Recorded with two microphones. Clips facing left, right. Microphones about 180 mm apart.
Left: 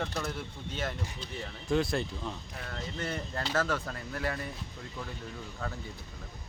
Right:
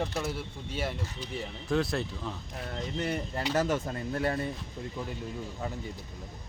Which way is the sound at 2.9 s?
15° right (ahead or behind).